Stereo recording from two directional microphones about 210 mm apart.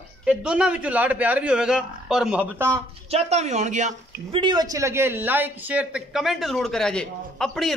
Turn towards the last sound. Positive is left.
turn(degrees=0)  # may be behind; listen again after turning